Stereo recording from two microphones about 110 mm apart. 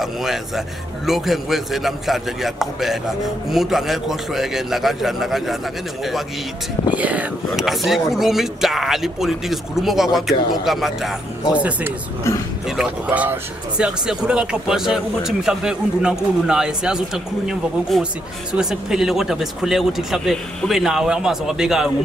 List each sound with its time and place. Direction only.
0.0 s speech: centre (ahead or behind)
7.0 s speech: 10° right (ahead or behind)
7.6 s speech: centre (ahead or behind)
11.5 s speech: 10° right (ahead or behind)
12.2 s a man's voice: 25° left (ahead or behind)
12.6 s speech: 5° right (ahead or behind)